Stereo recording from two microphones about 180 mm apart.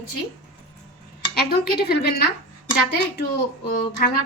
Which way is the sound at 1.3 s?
60° left (ahead or behind).